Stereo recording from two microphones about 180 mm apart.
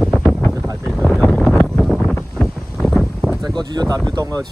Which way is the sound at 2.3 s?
Centre (ahead or behind).